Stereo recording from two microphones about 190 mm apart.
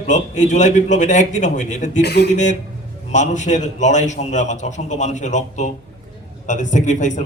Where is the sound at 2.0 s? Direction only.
60° left (ahead or behind).